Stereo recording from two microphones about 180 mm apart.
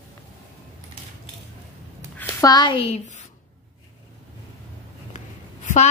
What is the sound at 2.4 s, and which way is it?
Speech, 25° left (ahead or behind).